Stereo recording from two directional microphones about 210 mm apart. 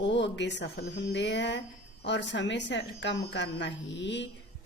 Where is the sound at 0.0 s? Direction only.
55° left (ahead or behind).